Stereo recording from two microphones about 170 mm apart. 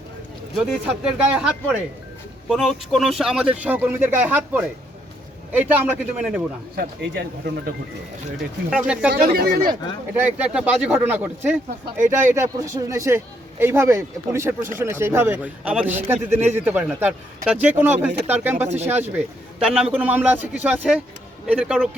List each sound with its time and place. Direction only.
1.4 s a man's voice: 10° right (ahead or behind)
6.7 s speech: 75° right (ahead or behind)
8.7 s a man's voice: 5° right (ahead or behind)
9.2 s speech: 65° right (ahead or behind)
10.2 s a man's voice: 5° right (ahead or behind)